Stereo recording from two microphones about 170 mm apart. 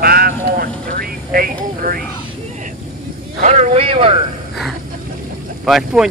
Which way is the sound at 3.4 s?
45° right (ahead or behind).